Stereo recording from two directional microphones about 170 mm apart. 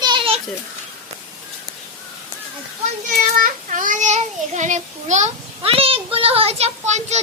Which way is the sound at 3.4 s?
50° right (ahead or behind).